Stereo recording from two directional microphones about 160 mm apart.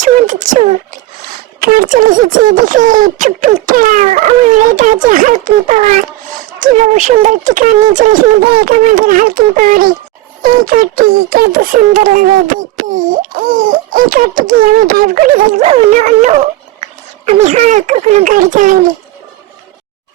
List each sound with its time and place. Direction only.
0.0 s music: 50° right (ahead or behind)
1.6 s speech: 60° right (ahead or behind)
15.6 s speech: 40° right (ahead or behind)